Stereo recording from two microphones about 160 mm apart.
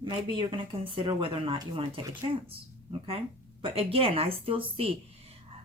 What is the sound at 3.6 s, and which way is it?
Speech, 35° right (ahead or behind).